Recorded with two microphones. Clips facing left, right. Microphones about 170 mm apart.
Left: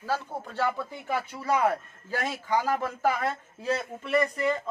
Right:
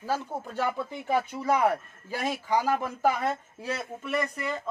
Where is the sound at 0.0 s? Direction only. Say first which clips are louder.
Right 1 dB; 15° right (ahead or behind).